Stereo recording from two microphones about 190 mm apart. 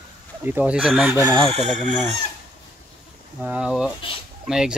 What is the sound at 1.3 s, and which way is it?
Chicken, 35° right (ahead or behind).